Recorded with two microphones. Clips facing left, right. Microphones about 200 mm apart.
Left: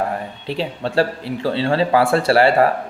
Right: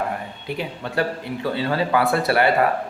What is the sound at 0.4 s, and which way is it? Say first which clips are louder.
A man's voice: left 5 dB; 30° left (ahead or behind).